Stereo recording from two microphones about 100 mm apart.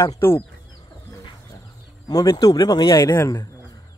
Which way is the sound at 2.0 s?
40° left (ahead or behind).